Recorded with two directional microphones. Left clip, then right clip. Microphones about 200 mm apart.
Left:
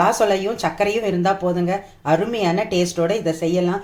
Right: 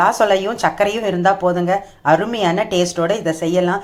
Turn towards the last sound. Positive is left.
turn(degrees=5)  # may be behind; listen again after turning